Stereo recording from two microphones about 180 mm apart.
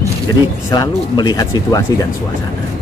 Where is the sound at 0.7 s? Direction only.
25° left (ahead or behind).